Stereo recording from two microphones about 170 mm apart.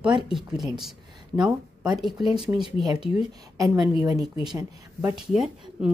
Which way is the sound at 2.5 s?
15° right (ahead or behind).